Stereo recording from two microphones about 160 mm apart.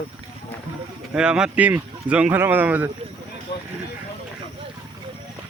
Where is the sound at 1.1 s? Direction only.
5° right (ahead or behind).